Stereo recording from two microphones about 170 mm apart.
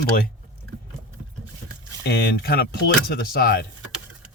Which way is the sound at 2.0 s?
90° left.